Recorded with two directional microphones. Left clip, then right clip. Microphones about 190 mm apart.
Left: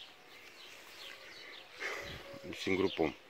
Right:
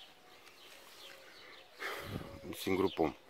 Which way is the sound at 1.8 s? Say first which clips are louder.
Left 1 dB; 5° right (ahead or behind).